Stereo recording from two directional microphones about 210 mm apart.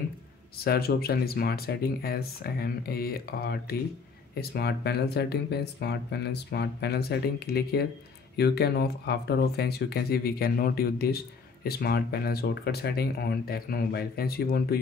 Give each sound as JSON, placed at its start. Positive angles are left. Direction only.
{"t": 0.7, "sound": "speech", "side_deg": 45}